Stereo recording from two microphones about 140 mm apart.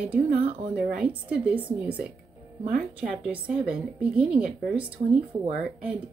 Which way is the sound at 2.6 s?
90° right.